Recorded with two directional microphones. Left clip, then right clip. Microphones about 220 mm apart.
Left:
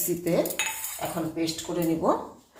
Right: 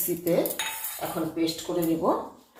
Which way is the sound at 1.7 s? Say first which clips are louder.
Right 1 dB; 35° left (ahead or behind).